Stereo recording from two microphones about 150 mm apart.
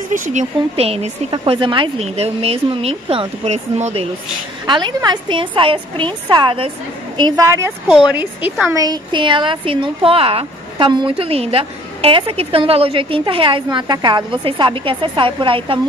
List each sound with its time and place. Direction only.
0.1 s a woman's voice: 55° right (ahead or behind)
4.6 s a woman's voice: 30° right (ahead or behind); by 8.5 s 10° right (ahead or behind)
8.6 s a woman's voice: 25° right (ahead or behind)